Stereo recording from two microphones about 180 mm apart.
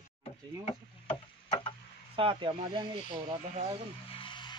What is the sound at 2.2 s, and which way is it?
Speech, 30° right (ahead or behind).